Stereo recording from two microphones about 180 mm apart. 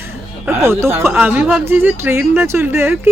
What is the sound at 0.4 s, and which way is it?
Speech, 15° right (ahead or behind).